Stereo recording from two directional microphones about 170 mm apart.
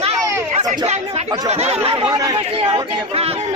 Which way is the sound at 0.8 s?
40° right (ahead or behind).